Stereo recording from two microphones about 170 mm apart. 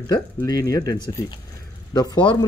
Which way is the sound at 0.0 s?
20° left (ahead or behind).